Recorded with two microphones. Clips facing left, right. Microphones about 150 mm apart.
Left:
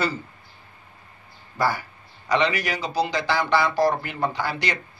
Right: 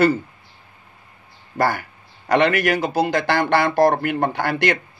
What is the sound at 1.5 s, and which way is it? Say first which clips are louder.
Speech: right 4 dB; 60° right (ahead or behind).